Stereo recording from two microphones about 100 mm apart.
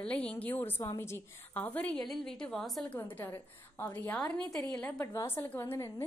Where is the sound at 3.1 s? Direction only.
20° left (ahead or behind).